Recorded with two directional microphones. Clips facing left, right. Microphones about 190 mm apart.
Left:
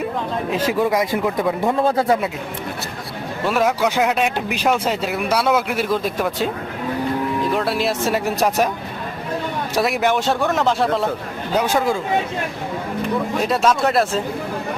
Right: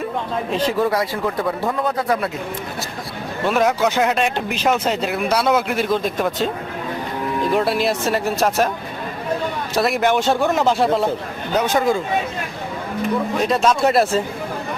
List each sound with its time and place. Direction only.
0.5 s a man's voice: 10° left (ahead or behind)
1.8 s speech: 30° left (ahead or behind)
3.4 s speech: 5° left (ahead or behind)
7.5 s a man's voice: centre (ahead or behind)
9.7 s speech: 5° left (ahead or behind)
13.5 s speech: 5° left (ahead or behind)